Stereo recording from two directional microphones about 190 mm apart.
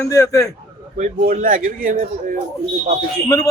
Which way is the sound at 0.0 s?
15° left (ahead or behind).